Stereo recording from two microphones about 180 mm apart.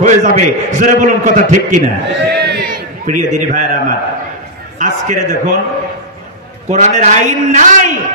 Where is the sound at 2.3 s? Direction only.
60° right (ahead or behind).